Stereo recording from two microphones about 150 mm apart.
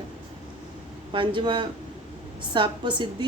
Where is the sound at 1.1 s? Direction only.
35° right (ahead or behind).